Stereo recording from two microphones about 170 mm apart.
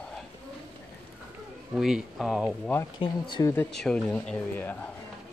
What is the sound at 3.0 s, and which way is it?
Speech, 25° left (ahead or behind).